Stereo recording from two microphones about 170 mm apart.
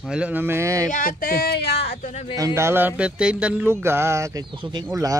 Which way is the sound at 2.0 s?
40° left (ahead or behind).